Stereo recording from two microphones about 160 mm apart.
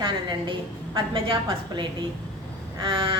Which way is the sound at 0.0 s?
30° right (ahead or behind).